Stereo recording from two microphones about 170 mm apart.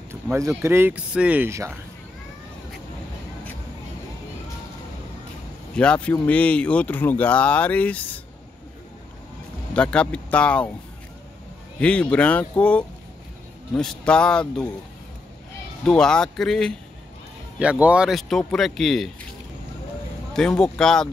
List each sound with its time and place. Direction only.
0.1 s speech: 15° right (ahead or behind)
5.8 s speech: 5° left (ahead or behind)
9.8 s speech: 5° left (ahead or behind)
11.8 s speech: 5° left (ahead or behind)
15.8 s speech: 5° left (ahead or behind)
17.6 s speech: 5° right (ahead or behind)
20.3 s speech: 5° left (ahead or behind)